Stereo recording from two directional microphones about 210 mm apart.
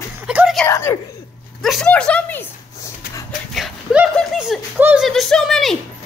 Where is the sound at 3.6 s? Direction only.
Centre (ahead or behind).